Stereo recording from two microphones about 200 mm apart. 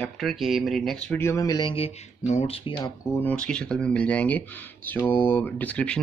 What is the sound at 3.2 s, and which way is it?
Speech, 5° left (ahead or behind).